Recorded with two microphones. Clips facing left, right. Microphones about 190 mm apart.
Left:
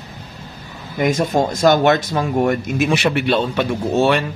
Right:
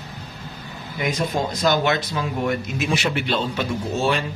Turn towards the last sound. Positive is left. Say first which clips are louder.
# left 6 dB
turn(degrees=65)  # may be behind; listen again after turning